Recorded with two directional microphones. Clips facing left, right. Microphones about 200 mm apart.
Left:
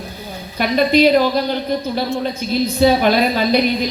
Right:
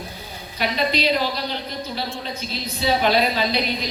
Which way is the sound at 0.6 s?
50° left (ahead or behind).